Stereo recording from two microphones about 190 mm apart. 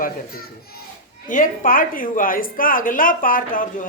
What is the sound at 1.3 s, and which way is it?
A woman's voice, 45° left (ahead or behind).